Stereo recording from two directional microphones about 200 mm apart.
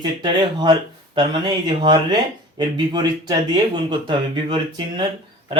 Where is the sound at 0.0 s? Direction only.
20° right (ahead or behind).